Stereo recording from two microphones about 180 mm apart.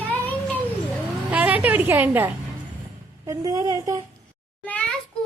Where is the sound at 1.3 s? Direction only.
10° right (ahead or behind).